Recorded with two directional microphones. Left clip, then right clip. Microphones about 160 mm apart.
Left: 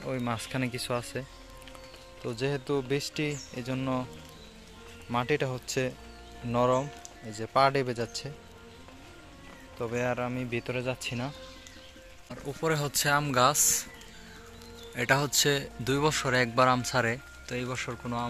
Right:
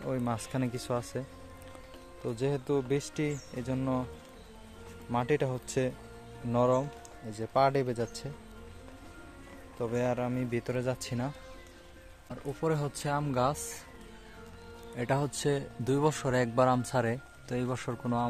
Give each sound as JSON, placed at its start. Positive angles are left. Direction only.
{"t": 0.0, "sound": "speech", "side_deg": -5}
{"t": 2.2, "sound": "speech", "side_deg": -10}
{"t": 5.1, "sound": "speech", "side_deg": -10}
{"t": 9.9, "sound": "speech", "side_deg": -15}
{"t": 12.6, "sound": "speech", "side_deg": -10}
{"t": 15.0, "sound": "speech", "side_deg": -10}
{"t": 17.5, "sound": "speech", "side_deg": -35}